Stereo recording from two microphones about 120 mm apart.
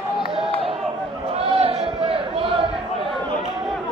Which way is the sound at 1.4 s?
55° right (ahead or behind).